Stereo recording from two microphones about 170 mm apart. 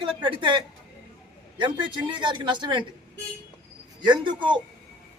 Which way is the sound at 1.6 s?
30° right (ahead or behind).